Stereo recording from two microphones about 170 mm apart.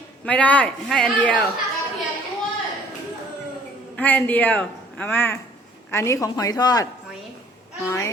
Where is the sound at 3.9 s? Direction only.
10° left (ahead or behind).